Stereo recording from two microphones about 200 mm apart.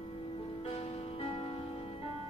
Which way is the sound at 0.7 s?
35° left (ahead or behind).